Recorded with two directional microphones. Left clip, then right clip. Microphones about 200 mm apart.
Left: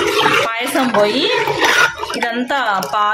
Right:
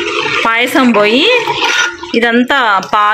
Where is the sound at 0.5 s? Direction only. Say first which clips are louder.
Right 7 dB; 25° right (ahead or behind).